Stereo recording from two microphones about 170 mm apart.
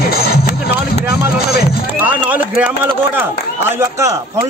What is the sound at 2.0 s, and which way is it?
A man's voice, 10° right (ahead or behind).